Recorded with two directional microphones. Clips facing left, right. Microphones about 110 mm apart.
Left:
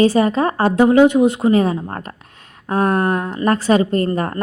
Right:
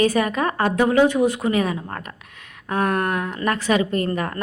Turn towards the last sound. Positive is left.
turn(degrees=30)  # may be behind; listen again after turning